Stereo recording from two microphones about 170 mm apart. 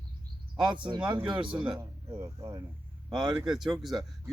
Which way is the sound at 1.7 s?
20° right (ahead or behind).